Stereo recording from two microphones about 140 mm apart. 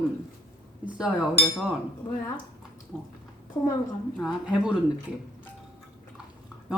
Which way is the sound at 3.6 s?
20° left (ahead or behind).